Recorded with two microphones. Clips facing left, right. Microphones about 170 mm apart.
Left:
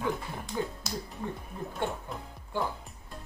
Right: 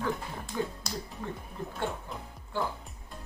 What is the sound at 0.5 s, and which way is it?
Speech, 20° left (ahead or behind).